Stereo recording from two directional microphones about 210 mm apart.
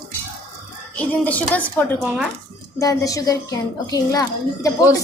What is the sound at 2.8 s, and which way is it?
A woman's voice, 15° left (ahead or behind).